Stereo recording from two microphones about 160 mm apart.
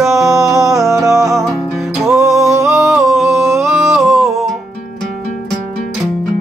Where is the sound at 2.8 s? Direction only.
Centre (ahead or behind).